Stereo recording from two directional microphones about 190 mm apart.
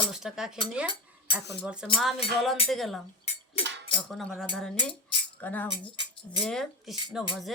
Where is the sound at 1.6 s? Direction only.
5° right (ahead or behind).